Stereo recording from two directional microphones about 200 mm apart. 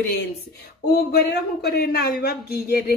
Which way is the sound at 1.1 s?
55° left (ahead or behind).